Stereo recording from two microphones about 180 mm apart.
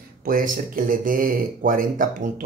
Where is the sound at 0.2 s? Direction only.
50° right (ahead or behind).